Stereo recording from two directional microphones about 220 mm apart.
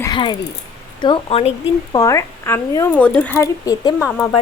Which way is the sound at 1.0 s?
25° left (ahead or behind).